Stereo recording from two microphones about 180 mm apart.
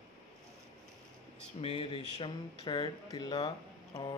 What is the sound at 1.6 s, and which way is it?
Speech, 30° left (ahead or behind).